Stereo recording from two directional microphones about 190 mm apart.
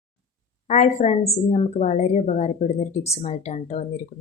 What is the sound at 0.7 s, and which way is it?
A woman's voice, 35° left (ahead or behind).